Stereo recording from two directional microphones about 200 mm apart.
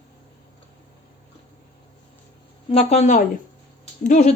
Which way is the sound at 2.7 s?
35° left (ahead or behind).